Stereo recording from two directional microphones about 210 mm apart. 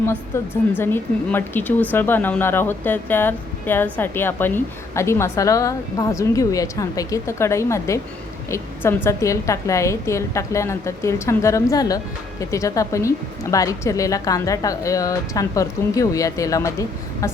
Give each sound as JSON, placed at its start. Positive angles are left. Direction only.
{"t": 0.0, "sound": "speech", "side_deg": 10}